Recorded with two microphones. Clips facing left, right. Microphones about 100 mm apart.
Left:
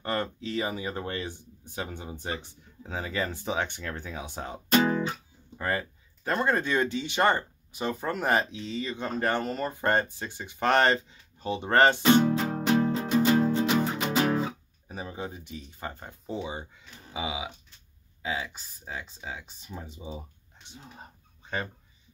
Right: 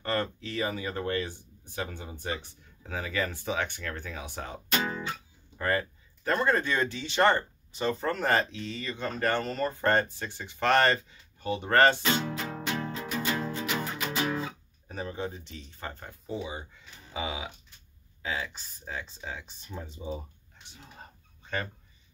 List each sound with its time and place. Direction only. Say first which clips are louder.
0.0 s speech: even; 20° left (ahead or behind)
4.6 s music: left 8 dB; 35° left (ahead or behind)
5.6 s speech: right 1 dB; 20° left (ahead or behind)
12.2 s music: left 9 dB; 40° left (ahead or behind)
12.9 s music: left 9 dB; 30° left (ahead or behind)
14.9 s speech: right 2 dB; 10° left (ahead or behind)
17.1 s speech: left 1 dB; 10° left (ahead or behind)